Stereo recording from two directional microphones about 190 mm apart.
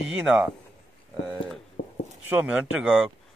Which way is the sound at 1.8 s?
50° left (ahead or behind).